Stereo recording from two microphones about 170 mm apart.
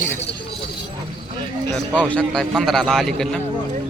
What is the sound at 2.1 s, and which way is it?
A man's voice, 5° left (ahead or behind).